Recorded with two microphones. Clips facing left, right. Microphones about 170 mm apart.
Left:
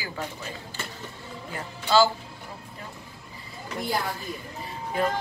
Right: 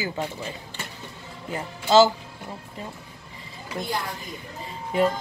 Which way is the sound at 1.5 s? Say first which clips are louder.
Right 4 dB; 20° right (ahead or behind).